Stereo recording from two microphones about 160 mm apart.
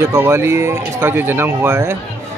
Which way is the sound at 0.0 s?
15° right (ahead or behind).